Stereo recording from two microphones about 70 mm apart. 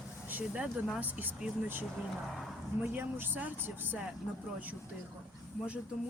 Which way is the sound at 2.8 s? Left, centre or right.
Right.